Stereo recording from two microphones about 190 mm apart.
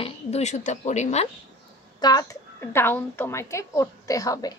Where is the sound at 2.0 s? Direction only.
20° left (ahead or behind).